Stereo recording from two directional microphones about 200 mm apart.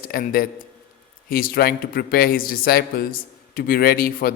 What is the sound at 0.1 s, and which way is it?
A man's voice, 45° left (ahead or behind).